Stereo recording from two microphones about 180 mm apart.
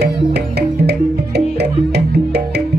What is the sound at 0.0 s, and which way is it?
Music, 65° right (ahead or behind).